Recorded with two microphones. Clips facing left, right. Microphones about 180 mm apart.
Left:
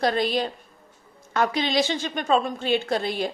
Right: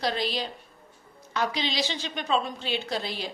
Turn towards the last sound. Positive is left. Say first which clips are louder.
# left 6 dB
turn(degrees=50)  # may be behind; listen again after turning